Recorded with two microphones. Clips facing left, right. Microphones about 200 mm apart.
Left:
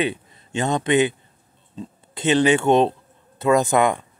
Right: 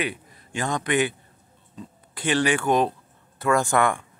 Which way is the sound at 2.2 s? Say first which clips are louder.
Left 5 dB; 20° left (ahead or behind).